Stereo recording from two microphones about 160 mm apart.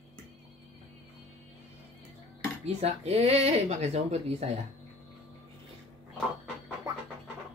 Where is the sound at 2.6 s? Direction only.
40° right (ahead or behind).